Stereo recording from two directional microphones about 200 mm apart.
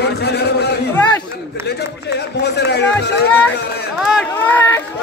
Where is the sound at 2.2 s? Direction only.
55° left (ahead or behind).